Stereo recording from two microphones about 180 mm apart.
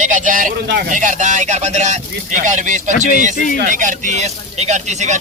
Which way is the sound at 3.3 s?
45° left (ahead or behind).